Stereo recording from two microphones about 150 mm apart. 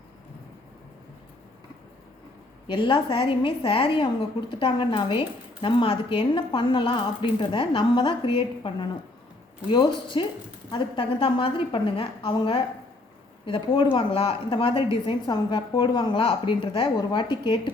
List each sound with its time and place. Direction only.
2.6 s a woman's voice: 35° left (ahead or behind)